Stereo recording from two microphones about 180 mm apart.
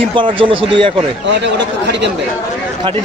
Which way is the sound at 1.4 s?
75° right (ahead or behind).